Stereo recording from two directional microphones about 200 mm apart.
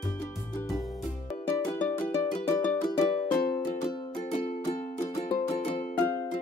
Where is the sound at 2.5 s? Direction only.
10° left (ahead or behind).